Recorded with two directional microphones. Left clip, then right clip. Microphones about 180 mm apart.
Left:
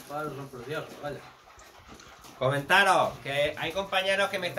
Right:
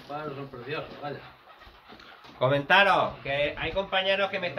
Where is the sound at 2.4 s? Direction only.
55° right (ahead or behind).